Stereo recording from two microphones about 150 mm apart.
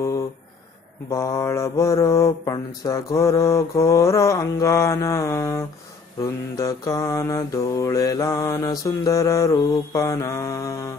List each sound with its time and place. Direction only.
1.1 s mantra: 20° left (ahead or behind)